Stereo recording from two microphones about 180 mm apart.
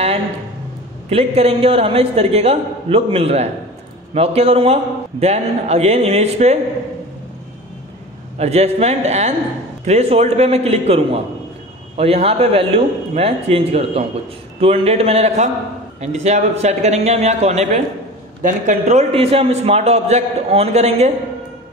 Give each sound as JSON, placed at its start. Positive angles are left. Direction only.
{"t": 1.1, "sound": "a man's voice", "side_deg": -35}
{"t": 8.4, "sound": "a man's voice", "side_deg": -35}